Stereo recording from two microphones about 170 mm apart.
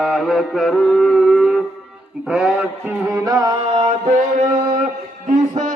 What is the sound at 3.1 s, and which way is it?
Music, 20° right (ahead or behind).